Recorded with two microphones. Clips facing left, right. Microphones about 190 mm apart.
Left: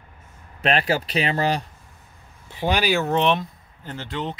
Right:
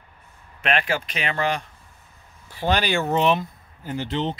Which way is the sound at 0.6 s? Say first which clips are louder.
Left 2 dB; 35° left (ahead or behind).